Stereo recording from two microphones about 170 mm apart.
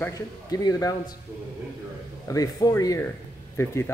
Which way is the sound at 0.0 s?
20° left (ahead or behind).